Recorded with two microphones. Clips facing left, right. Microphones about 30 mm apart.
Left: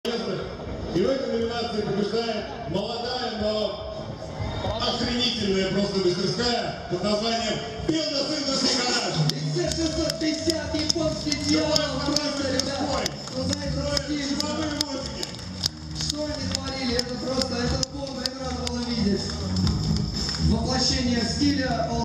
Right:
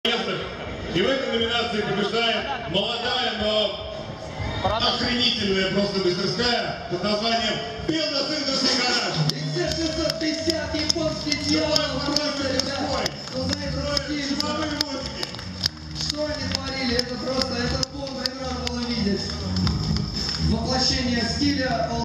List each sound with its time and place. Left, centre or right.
0.1 s a sound: right
0.9 s a man's voice: right
4.6 s a man's voice: right
16.8 s a man's voice: right
18.8 s a sound: right
20.4 s a man's voice: right